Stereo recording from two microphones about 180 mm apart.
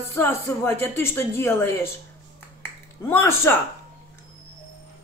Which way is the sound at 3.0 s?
15° left (ahead or behind).